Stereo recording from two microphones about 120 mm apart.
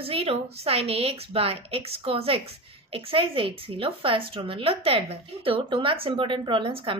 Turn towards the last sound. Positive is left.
turn(degrees=-50)  # may be behind; listen again after turning